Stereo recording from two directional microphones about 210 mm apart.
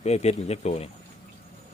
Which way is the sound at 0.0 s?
30° left (ahead or behind).